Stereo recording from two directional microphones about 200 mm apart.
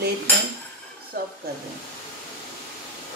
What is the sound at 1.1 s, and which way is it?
Speech, 45° right (ahead or behind).